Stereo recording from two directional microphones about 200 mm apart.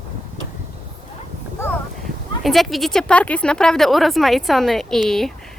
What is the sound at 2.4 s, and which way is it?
A woman's voice, centre (ahead or behind).